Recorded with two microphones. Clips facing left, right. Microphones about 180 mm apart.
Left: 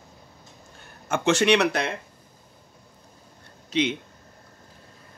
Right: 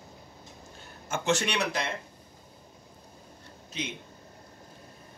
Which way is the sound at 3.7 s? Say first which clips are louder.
Left 13 dB; 90° left.